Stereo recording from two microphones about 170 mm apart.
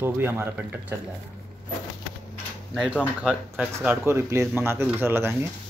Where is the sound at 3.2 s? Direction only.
5° right (ahead or behind).